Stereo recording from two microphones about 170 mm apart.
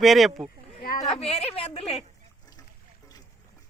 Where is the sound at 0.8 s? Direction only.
55° left (ahead or behind).